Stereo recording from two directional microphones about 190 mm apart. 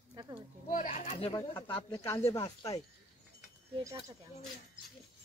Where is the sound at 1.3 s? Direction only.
25° left (ahead or behind).